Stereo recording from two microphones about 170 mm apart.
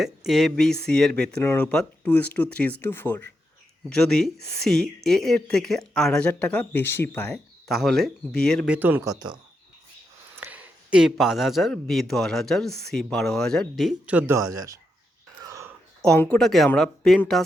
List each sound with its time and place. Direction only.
0.0 s speech: centre (ahead or behind)
8.6 s speech: 10° right (ahead or behind)
10.3 s speech: 10° right (ahead or behind)
14.2 s speech: 15° right (ahead or behind)
16.1 s speech: 10° left (ahead or behind)
16.4 s speech: centre (ahead or behind)